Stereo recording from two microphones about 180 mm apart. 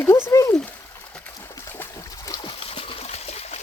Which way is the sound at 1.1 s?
10° left (ahead or behind).